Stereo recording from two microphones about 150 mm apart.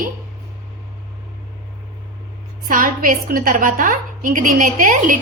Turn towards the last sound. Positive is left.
turn(degrees=-60)  # may be behind; listen again after turning